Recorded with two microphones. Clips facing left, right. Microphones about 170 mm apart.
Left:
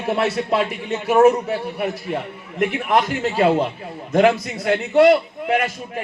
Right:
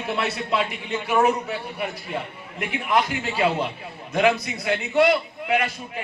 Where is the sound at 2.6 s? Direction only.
45° left (ahead or behind).